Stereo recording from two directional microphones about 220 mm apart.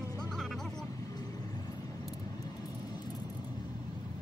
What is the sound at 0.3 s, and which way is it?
Music, centre (ahead or behind).